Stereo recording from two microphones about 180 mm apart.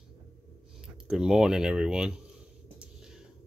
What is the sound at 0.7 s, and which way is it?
Speech, 5° right (ahead or behind).